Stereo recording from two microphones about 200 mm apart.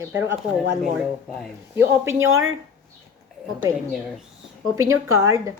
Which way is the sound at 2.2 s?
90° right.